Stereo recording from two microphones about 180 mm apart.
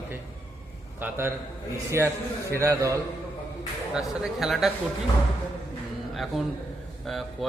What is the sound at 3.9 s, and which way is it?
Speech, 5° right (ahead or behind).